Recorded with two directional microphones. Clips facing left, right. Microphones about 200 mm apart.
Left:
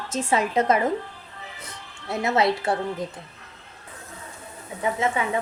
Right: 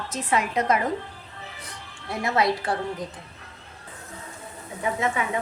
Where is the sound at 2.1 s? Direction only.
25° left (ahead or behind).